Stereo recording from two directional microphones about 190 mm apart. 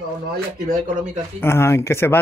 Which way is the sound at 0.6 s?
40° right (ahead or behind).